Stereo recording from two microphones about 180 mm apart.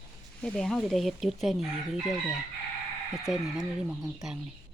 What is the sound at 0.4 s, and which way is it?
Speech, 5° left (ahead or behind).